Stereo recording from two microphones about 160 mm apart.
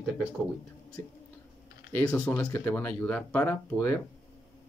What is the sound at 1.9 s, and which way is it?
Speech, 10° left (ahead or behind).